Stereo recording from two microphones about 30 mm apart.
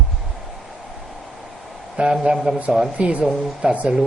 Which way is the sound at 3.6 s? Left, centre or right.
Right.